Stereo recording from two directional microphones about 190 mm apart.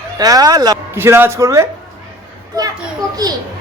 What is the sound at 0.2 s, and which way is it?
Speech, 20° right (ahead or behind).